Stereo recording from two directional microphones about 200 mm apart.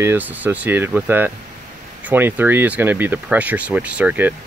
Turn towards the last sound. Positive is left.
turn(degrees=-10)  # may be behind; listen again after turning